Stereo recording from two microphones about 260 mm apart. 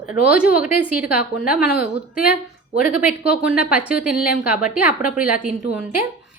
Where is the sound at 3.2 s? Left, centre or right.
Centre.